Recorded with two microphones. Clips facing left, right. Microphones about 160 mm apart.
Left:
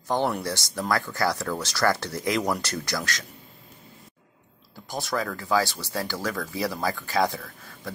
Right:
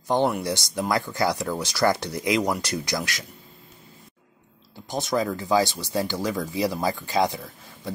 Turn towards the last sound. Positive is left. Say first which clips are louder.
# right 2 dB
turn(degrees=-20)  # may be behind; listen again after turning